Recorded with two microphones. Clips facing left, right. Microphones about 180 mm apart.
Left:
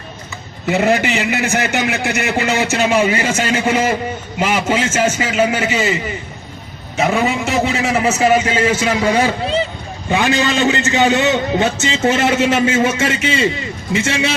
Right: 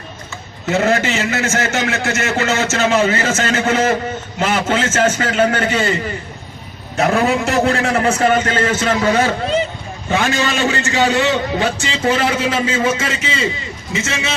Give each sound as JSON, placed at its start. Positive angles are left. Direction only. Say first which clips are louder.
{"t": 0.7, "sound": "a man's voice", "louder": "left 1 dB", "side_deg": 15}
{"t": 13.9, "sound": "a man's voice", "louder": "left 5 dB", "side_deg": 30}